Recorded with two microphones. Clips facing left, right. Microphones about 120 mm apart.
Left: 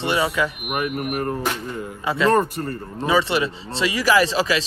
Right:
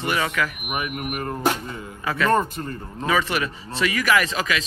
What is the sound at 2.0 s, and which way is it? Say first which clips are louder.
Speech: left 2 dB; 25° left (ahead or behind).